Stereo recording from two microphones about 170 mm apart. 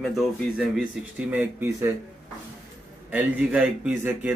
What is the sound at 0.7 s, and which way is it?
Speech, 5° right (ahead or behind).